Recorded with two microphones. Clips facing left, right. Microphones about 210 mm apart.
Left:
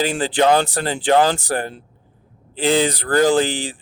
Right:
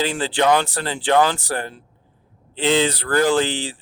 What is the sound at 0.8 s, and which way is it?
Speech, 45° left (ahead or behind).